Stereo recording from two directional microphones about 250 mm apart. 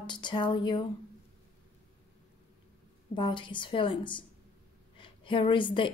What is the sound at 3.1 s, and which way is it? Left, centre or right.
A woman's voice, centre.